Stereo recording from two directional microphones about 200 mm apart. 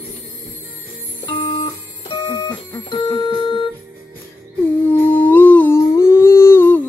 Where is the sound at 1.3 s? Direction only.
25° left (ahead or behind).